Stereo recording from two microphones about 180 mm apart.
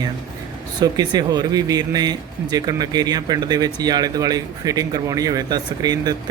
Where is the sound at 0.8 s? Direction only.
20° right (ahead or behind).